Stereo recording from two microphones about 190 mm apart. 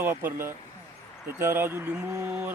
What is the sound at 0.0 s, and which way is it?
A man's voice, 10° right (ahead or behind).